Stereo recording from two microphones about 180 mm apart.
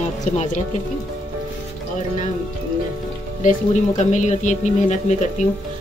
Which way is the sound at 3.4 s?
45° left (ahead or behind).